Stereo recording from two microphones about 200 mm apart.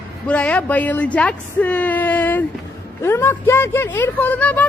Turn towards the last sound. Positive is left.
turn(degrees=5)  # may be behind; listen again after turning